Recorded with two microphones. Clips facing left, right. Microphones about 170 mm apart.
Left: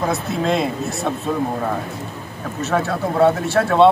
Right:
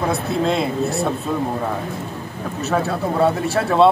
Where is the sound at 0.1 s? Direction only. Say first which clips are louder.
Even; centre (ahead or behind).